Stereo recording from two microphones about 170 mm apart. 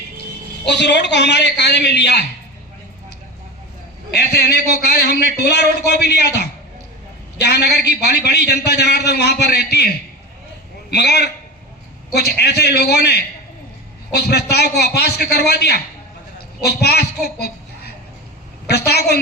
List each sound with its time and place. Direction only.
0.6 s speech: 90° left
4.1 s a man's voice: 70° left (ahead or behind)
10.9 s a man's voice: 75° left (ahead or behind)